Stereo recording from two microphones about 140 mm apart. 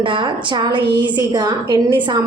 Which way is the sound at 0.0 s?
35° right (ahead or behind).